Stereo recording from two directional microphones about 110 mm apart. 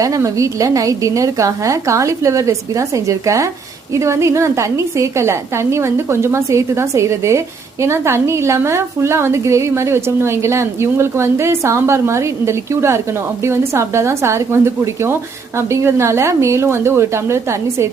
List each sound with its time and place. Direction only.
0.0 s a woman's voice: 30° right (ahead or behind)